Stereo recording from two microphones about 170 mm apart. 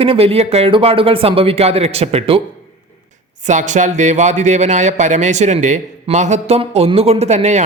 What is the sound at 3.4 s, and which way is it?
Speech, 45° right (ahead or behind).